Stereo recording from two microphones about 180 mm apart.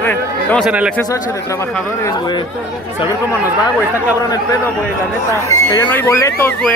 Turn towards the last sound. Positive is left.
turn(degrees=10)  # may be behind; listen again after turning